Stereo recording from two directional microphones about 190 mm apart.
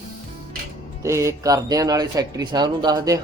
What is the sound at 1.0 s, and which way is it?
Speech, 15° right (ahead or behind).